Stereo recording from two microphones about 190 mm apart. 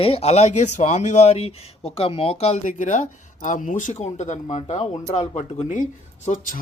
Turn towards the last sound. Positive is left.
turn(degrees=40)  # may be behind; listen again after turning